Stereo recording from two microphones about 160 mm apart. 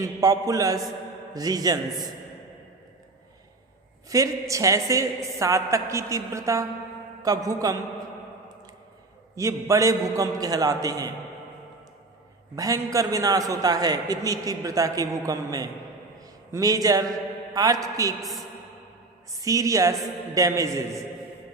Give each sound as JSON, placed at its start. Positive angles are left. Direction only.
{"t": 0.0, "sound": "a man's voice", "side_deg": -20}
{"t": 4.1, "sound": "a man's voice", "side_deg": -20}
{"t": 9.3, "sound": "a man's voice", "side_deg": -20}
{"t": 12.5, "sound": "a man's voice", "side_deg": -20}
{"t": 18.2, "sound": "a woman's voice", "side_deg": 0}
{"t": 19.4, "sound": "a man's voice", "side_deg": -20}